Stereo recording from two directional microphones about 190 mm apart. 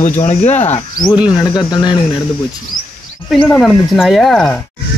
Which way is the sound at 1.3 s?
20° left (ahead or behind).